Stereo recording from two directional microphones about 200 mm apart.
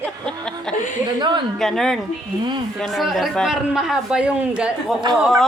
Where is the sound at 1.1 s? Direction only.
20° right (ahead or behind).